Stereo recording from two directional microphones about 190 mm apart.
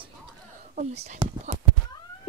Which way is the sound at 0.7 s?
35° right (ahead or behind).